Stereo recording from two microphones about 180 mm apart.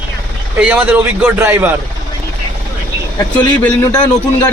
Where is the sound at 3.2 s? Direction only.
20° left (ahead or behind).